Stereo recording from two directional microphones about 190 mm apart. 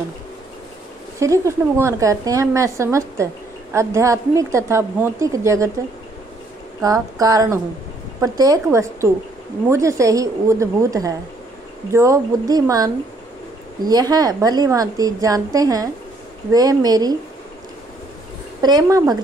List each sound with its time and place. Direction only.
1.2 s a woman's voice: 15° right (ahead or behind)
6.8 s a woman's voice: 20° right (ahead or behind)
18.6 s a woman's voice: 20° right (ahead or behind)